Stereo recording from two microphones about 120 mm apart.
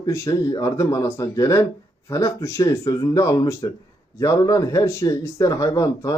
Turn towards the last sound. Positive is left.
turn(degrees=30)  # may be behind; listen again after turning